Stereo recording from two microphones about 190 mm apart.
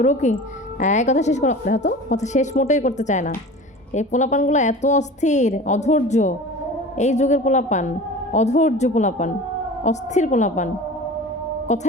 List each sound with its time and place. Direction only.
0.0 s a woman's voice: 40° left (ahead or behind)
11.7 s a woman's voice: 40° left (ahead or behind)